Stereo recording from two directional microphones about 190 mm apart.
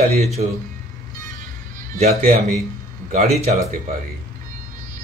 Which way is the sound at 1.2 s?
45° right (ahead or behind).